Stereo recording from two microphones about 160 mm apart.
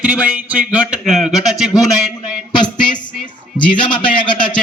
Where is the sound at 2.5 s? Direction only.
30° left (ahead or behind).